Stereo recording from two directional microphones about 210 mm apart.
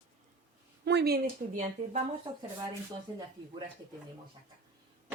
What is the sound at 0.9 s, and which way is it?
Speech, 50° right (ahead or behind).